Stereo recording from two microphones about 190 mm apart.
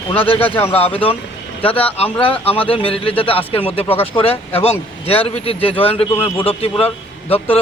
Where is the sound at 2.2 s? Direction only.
30° left (ahead or behind).